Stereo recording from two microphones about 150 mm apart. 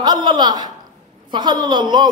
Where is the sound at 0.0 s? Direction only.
30° right (ahead or behind).